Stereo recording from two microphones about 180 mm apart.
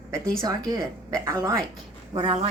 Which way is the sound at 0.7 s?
20° right (ahead or behind).